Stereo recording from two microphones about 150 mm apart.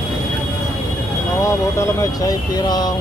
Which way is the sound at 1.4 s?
20° left (ahead or behind).